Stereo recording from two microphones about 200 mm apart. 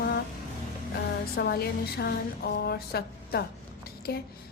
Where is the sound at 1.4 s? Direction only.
50° left (ahead or behind).